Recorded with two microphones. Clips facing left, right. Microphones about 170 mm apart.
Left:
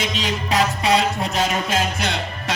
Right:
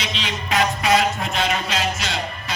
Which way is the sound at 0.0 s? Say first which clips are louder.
Left 4 dB; 45° left (ahead or behind).